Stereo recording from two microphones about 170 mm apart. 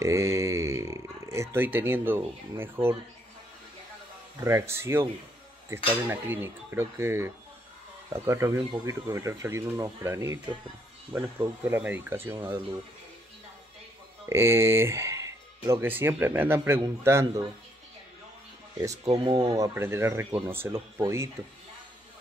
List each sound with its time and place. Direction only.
0.0 s a sound: 15° right (ahead or behind)
4.5 s speech: 15° right (ahead or behind)
6.0 s speech: 15° right (ahead or behind)
14.3 s speech: 15° right (ahead or behind)
19.0 s speech: 35° right (ahead or behind)
19.3 s speech: 20° right (ahead or behind)